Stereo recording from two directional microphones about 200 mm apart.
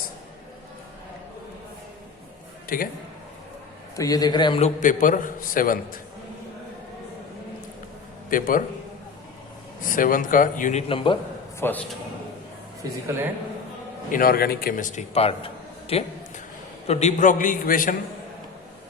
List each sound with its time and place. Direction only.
2.6 s a man's voice: 45° left (ahead or behind)
3.9 s a man's voice: 20° left (ahead or behind)
4.8 s a man's voice: 40° left (ahead or behind)
8.3 s a man's voice: 45° left (ahead or behind)
9.8 s a man's voice: 45° left (ahead or behind); by 11.2 s 25° left (ahead or behind)
11.6 s a man's voice: 10° left (ahead or behind)
12.8 s a man's voice: 15° right (ahead or behind)
14.1 s a man's voice: 45° left (ahead or behind)